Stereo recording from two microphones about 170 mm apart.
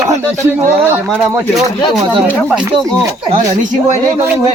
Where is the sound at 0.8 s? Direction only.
5° right (ahead or behind).